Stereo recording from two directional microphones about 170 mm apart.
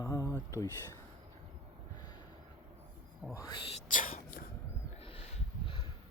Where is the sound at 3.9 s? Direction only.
50° left (ahead or behind).